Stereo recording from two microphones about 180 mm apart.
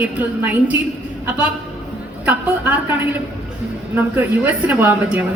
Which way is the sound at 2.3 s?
10° right (ahead or behind).